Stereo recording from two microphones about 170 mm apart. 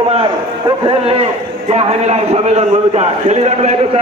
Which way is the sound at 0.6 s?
30° right (ahead or behind).